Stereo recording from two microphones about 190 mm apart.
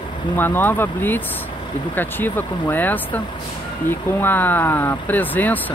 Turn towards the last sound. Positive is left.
turn(degrees=10)  # may be behind; listen again after turning